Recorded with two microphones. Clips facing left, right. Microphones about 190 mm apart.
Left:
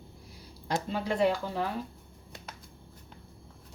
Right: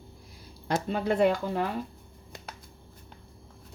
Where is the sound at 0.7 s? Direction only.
55° right (ahead or behind).